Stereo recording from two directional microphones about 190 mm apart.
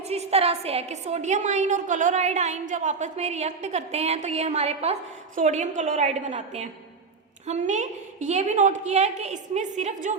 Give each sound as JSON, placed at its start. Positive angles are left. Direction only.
{"t": 0.1, "sound": "a woman's voice", "side_deg": -35}